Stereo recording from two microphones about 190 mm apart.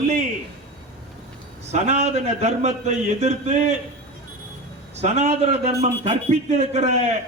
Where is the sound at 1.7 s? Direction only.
35° right (ahead or behind).